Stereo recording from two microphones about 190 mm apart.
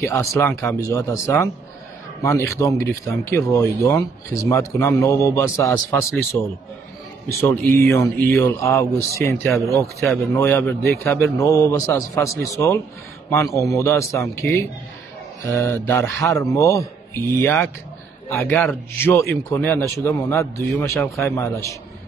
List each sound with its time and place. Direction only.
0.0 s speech: 15° left (ahead or behind)